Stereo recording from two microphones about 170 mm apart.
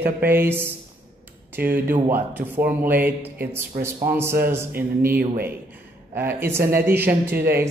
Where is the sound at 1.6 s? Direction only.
65° right (ahead or behind).